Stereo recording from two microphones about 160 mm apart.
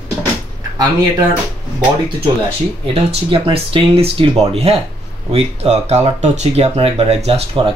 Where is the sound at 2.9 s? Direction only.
35° right (ahead or behind).